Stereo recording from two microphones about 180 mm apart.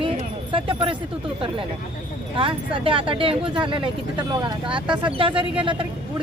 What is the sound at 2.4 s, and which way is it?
Speech, 30° right (ahead or behind).